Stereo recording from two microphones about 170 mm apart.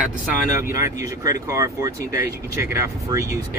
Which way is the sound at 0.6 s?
20° right (ahead or behind).